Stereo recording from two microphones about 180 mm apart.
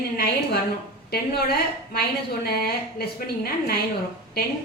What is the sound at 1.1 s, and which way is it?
A woman's voice, 60° left (ahead or behind).